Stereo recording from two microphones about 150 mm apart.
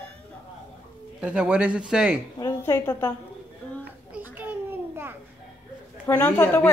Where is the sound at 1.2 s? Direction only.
5° right (ahead or behind).